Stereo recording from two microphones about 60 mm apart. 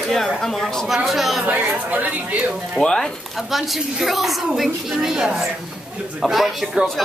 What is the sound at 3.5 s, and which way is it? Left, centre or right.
A woman's voice, centre.